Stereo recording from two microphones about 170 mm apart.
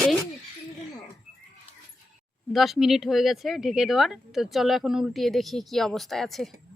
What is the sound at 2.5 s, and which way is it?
Speech, centre (ahead or behind).